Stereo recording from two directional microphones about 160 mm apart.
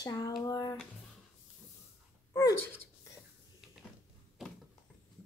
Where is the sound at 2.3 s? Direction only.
20° left (ahead or behind).